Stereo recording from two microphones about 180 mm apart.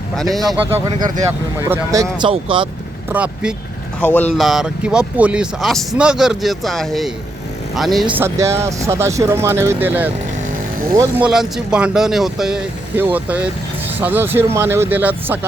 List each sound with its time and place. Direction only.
0.2 s speech: centre (ahead or behind)
0.9 s speech: 25° right (ahead or behind)
3.1 s speech: 10° right (ahead or behind)
4.0 s speech: 10° left (ahead or behind)
4.4 s speech: centre (ahead or behind)
8.1 s speech: 15° right (ahead or behind)
11.2 s speech: 5° right (ahead or behind)